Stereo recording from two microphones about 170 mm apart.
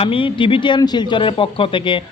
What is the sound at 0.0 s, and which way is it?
A man's voice, 30° left (ahead or behind).